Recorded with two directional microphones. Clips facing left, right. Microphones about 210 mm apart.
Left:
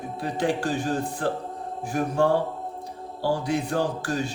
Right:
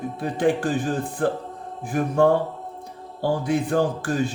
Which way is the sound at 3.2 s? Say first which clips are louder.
Right 3 dB; 55° right (ahead or behind).